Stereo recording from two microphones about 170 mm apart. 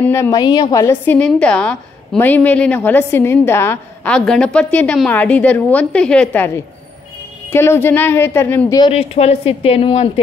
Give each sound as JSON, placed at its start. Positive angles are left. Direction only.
{"t": 0.0, "sound": "a woman's voice", "side_deg": 15}
{"t": 8.7, "sound": "speech", "side_deg": 30}
{"t": 9.1, "sound": "a woman's voice", "side_deg": 40}